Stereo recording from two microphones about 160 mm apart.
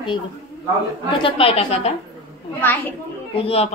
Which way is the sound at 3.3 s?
40° left (ahead or behind).